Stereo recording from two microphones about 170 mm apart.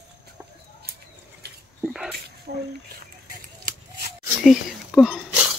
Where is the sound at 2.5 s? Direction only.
60° right (ahead or behind).